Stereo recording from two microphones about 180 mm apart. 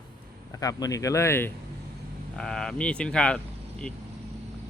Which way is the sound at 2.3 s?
5° left (ahead or behind).